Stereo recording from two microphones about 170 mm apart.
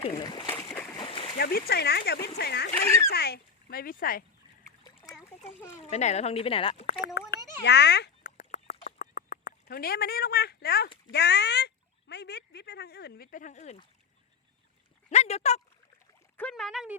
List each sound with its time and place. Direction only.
0.2 s speech: 25° left (ahead or behind)
0.5 s a sound: 10° left (ahead or behind)
0.9 s splash: 30° left (ahead or behind)
1.4 s speech: 65° left (ahead or behind)
2.8 s speech: 15° left (ahead or behind)
3.1 s speech: 70° left (ahead or behind)
4.8 s splash: 25° left (ahead or behind)
5.7 s speech: 40° left (ahead or behind)
7.0 s a child's voice: 85° left
8.2 s duck: 45° left (ahead or behind); by 10.8 s 65° left (ahead or behind)
11.1 s speech: 80° left; by 13.7 s 45° left (ahead or behind)
15.1 s speech: 40° left (ahead or behind)
16.4 s speech: 5° left (ahead or behind)